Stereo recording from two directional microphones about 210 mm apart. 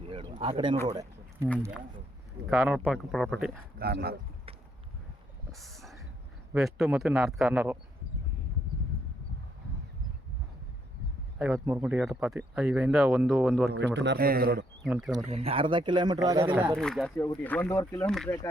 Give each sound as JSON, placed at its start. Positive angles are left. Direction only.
{"t": 0.0, "sound": "speech", "side_deg": -25}
{"t": 0.9, "sound": "a sound", "side_deg": -20}
{"t": 2.5, "sound": "speech", "side_deg": -5}
{"t": 3.8, "sound": "a man's voice", "side_deg": -50}
{"t": 5.5, "sound": "a sound", "side_deg": 0}
{"t": 6.5, "sound": "speech", "side_deg": 0}
{"t": 11.3, "sound": "speech", "side_deg": -5}
{"t": 13.7, "sound": "a man's voice", "side_deg": -55}
{"t": 14.8, "sound": "speech", "side_deg": -5}
{"t": 15.2, "sound": "speech", "side_deg": -30}
{"t": 16.7, "sound": "speech", "side_deg": 5}